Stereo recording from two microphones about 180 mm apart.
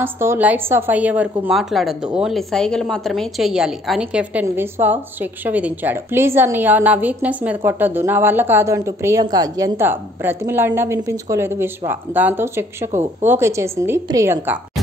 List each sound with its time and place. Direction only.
0.0 s a woman's voice: 10° right (ahead or behind)